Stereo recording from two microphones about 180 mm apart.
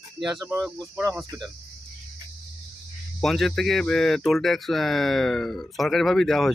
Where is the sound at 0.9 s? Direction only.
15° right (ahead or behind).